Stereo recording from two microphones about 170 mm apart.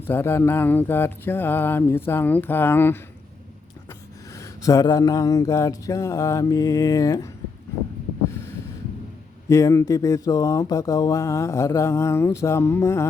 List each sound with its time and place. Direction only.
0.1 s speech: 15° left (ahead or behind)
4.4 s a sound: 20° left (ahead or behind)
9.5 s speech: 20° left (ahead or behind)